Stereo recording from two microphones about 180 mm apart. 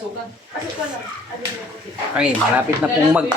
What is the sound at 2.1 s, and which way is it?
A man's voice, 5° right (ahead or behind).